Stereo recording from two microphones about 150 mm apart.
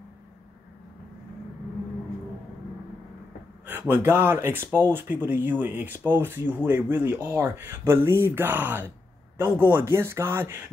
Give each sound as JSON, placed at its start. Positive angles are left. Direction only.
{"t": 3.6, "sound": "speech", "side_deg": -15}